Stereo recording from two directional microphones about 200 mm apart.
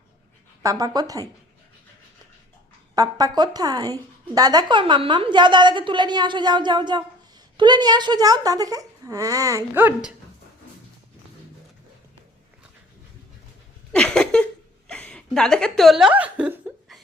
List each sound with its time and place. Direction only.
0.6 s speech: 20° right (ahead or behind)
2.9 s a woman's voice: 20° right (ahead or behind)
13.9 s a sound: 5° left (ahead or behind)
14.8 s chuckle: 5° left (ahead or behind)